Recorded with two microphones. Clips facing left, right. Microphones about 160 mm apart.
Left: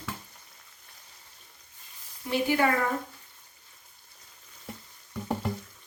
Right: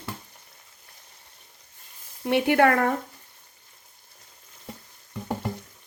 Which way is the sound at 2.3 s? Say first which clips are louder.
Right 6 dB; 65° right (ahead or behind).